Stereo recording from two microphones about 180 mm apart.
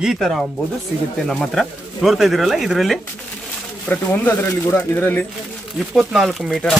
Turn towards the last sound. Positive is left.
turn(degrees=0)  # may be behind; listen again after turning